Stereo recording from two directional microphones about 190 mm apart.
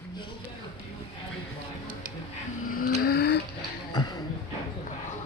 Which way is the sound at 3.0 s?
55° left (ahead or behind).